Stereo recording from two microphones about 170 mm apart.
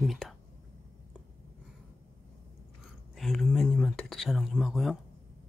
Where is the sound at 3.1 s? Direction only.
Centre (ahead or behind).